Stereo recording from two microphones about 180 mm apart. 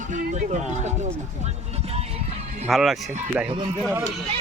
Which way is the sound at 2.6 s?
Centre (ahead or behind).